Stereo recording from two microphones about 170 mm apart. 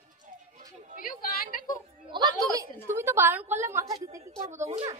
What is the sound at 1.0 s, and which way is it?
Speech, 55° left (ahead or behind).